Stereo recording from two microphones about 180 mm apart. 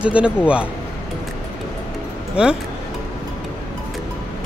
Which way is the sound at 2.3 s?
5° right (ahead or behind).